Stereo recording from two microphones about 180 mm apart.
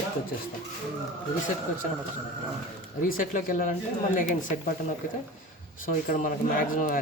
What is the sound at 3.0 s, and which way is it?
Speech, 50° left (ahead or behind).